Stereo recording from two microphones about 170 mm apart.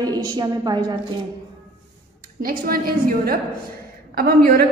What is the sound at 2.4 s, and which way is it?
A woman's voice, 60° right (ahead or behind).